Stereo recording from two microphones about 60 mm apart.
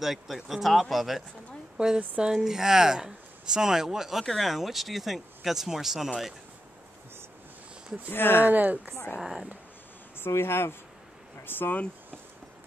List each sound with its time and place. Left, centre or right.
0.0 s speech: centre
2.0 s speech: centre
2.3 s speech: centre
8.1 s speech: left
8.5 s speech: right
9.1 s speech: centre
10.1 s speech: left